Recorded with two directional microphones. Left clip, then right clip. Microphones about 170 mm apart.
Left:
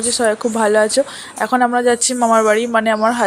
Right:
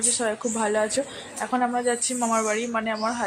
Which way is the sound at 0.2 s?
35° left (ahead or behind).